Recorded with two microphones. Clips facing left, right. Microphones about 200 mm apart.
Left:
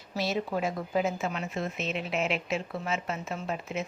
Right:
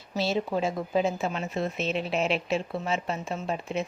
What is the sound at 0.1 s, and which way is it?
A woman's voice, 30° right (ahead or behind).